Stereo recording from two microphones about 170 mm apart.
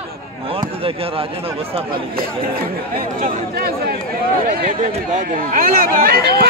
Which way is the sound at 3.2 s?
55° right (ahead or behind).